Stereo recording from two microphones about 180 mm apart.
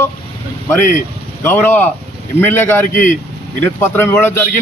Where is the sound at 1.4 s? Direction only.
10° left (ahead or behind).